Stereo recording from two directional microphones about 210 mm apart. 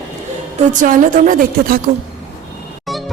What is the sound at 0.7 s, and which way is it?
A woman's voice, 40° right (ahead or behind).